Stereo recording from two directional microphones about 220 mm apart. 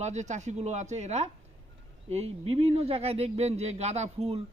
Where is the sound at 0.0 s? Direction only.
30° right (ahead or behind).